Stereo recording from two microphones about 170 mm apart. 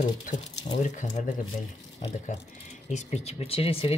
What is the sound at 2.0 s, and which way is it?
Speech, 35° left (ahead or behind).